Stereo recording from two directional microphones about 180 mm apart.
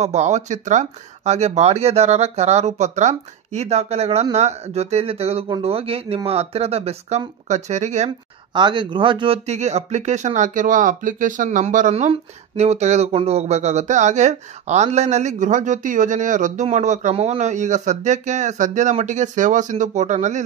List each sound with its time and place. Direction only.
0.0 s speech: 40° right (ahead or behind)
8.5 s speech: 25° right (ahead or behind); by 20.4 s 40° right (ahead or behind)